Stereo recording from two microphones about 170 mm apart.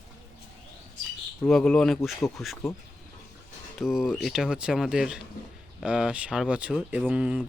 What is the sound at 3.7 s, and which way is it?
Speech, centre (ahead or behind).